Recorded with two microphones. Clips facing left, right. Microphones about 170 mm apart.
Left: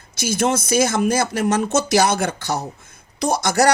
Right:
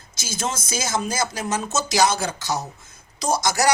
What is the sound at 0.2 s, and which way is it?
Speech, 60° left (ahead or behind).